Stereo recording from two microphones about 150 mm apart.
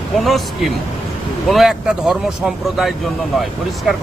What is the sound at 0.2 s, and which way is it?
Speech, centre (ahead or behind).